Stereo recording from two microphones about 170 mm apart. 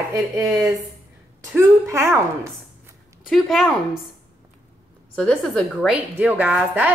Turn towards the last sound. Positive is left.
turn(degrees=-10)  # may be behind; listen again after turning